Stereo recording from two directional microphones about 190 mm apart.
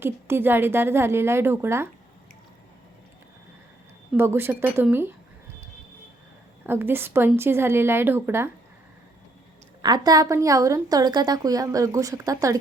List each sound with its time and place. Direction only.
0.0 s a woman's voice: 10° right (ahead or behind)
4.2 s a woman's voice: 10° right (ahead or behind)
6.7 s a woman's voice: 10° right (ahead or behind)
9.8 s a woman's voice: 20° right (ahead or behind)